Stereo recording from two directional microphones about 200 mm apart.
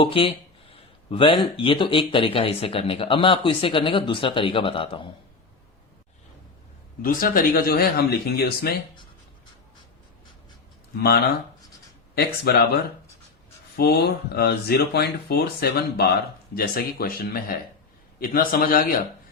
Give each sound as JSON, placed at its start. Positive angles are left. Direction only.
{"t": 0.0, "sound": "a sound", "side_deg": 25}
{"t": 1.5, "sound": "speech", "side_deg": 25}
{"t": 7.0, "sound": "speech", "side_deg": 45}
{"t": 12.1, "sound": "speech", "side_deg": 55}